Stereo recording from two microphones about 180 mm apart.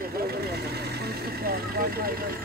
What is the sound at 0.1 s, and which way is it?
Vehicle, 60° right (ahead or behind).